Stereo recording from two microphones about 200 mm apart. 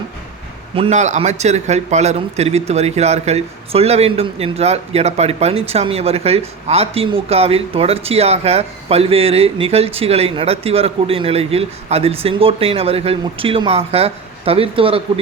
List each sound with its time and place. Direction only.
0.8 s a man's voice: 35° right (ahead or behind)